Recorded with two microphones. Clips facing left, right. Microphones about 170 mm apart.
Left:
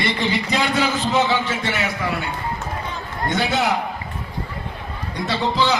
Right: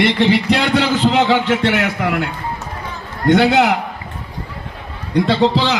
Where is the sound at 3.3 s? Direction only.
90° right.